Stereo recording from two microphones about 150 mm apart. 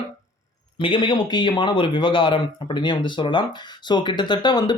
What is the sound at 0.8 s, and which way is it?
Speech, 35° left (ahead or behind).